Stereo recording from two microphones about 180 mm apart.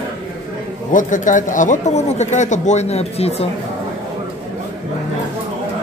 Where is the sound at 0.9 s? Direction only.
45° left (ahead or behind).